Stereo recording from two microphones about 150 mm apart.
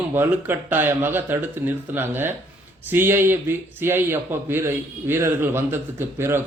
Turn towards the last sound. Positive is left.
turn(degrees=-15)  # may be behind; listen again after turning